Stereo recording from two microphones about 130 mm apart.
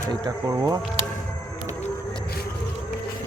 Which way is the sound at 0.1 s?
25° right (ahead or behind).